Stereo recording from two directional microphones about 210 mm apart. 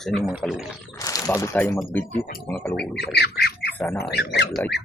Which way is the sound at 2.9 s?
50° left (ahead or behind).